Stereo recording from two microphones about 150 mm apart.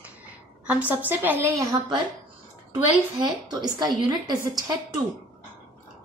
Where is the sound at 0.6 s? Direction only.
10° right (ahead or behind).